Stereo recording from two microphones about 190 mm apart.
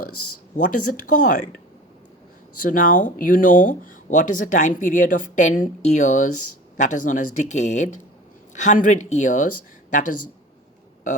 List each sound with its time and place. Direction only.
0.5 s speech: 45° left (ahead or behind)
2.6 s speech: 45° left (ahead or behind)